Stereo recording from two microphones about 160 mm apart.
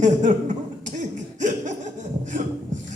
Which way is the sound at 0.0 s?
50° right (ahead or behind).